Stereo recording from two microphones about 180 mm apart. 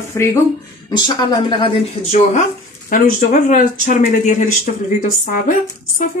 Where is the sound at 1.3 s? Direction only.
30° left (ahead or behind).